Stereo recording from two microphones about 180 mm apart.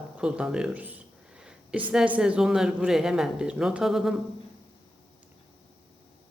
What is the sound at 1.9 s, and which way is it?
Speech, 5° right (ahead or behind).